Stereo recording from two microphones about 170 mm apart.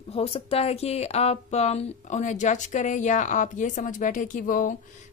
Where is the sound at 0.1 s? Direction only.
35° left (ahead or behind).